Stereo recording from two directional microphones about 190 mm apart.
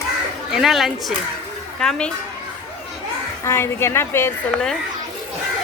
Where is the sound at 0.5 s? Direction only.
Centre (ahead or behind).